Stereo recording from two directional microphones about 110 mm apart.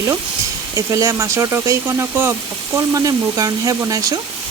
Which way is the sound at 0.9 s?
30° right (ahead or behind).